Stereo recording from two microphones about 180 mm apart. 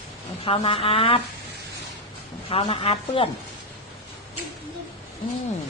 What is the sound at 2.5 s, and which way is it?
Speech, 30° left (ahead or behind).